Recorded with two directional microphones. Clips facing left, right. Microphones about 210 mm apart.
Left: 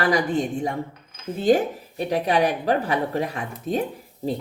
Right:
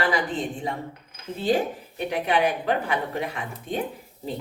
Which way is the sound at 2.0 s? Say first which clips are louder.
Left 2 dB; 35° left (ahead or behind).